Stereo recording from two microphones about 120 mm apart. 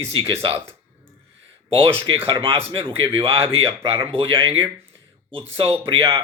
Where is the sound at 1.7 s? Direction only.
50° right (ahead or behind).